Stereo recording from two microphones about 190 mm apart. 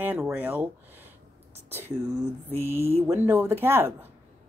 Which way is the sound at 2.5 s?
10° right (ahead or behind).